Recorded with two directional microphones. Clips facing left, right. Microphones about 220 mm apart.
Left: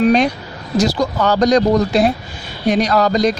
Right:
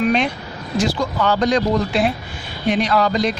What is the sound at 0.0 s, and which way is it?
A man's voice, 40° left (ahead or behind).